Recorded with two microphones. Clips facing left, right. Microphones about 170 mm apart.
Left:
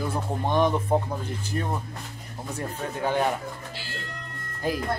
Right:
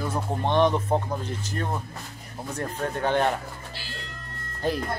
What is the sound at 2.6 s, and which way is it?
Speech, 10° left (ahead or behind).